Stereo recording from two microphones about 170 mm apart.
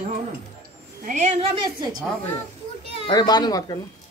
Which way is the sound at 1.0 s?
45° right (ahead or behind).